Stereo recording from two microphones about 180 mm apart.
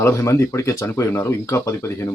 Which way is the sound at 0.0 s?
15° left (ahead or behind).